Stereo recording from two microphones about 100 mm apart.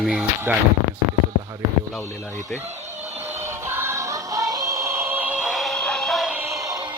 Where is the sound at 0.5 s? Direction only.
20° right (ahead or behind).